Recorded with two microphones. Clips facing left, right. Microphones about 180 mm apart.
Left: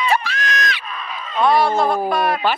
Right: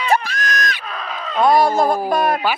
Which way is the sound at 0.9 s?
90° right.